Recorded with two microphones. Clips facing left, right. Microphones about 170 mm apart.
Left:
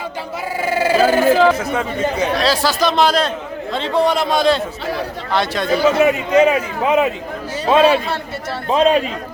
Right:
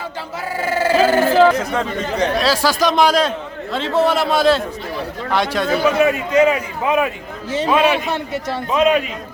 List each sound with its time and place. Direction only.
0.6 s chatter: 10° left (ahead or behind)
2.4 s a man's voice: 10° right (ahead or behind)
5.6 s a man's voice: 20° left (ahead or behind)
7.9 s a man's voice: 20° right (ahead or behind)
8.7 s a man's voice: 30° left (ahead or behind)